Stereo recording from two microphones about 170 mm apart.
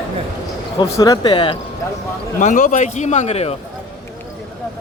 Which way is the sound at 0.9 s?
20° left (ahead or behind).